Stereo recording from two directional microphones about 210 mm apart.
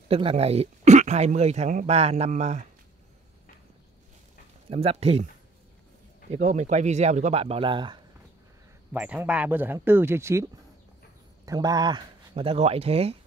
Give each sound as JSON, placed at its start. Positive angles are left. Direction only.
{"t": 0.1, "sound": "speech", "side_deg": -25}
{"t": 4.6, "sound": "speech", "side_deg": -30}
{"t": 6.3, "sound": "speech", "side_deg": -35}
{"t": 8.9, "sound": "speech", "side_deg": -5}